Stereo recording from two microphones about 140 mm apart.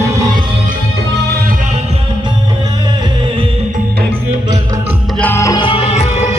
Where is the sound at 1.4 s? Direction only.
75° right (ahead or behind); by 2.0 s 50° right (ahead or behind).